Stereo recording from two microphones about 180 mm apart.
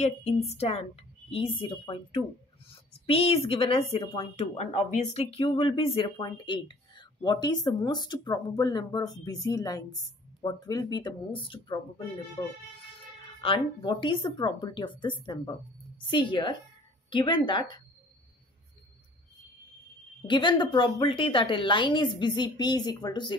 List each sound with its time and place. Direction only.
0.0 s a woman's voice: 40° left (ahead or behind)
13.4 s speech: 30° left (ahead or behind)
20.2 s speech: 25° left (ahead or behind)